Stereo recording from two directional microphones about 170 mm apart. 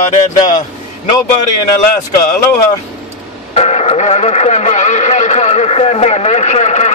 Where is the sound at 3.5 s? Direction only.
40° left (ahead or behind).